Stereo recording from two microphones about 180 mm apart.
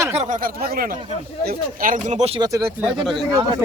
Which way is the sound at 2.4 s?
20° right (ahead or behind).